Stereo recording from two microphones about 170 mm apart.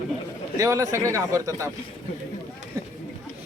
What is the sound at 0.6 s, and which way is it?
A man's voice, 15° right (ahead or behind).